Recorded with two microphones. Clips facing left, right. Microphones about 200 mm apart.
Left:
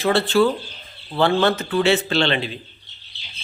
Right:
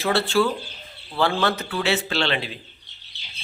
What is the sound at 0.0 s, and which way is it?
Speech, centre (ahead or behind).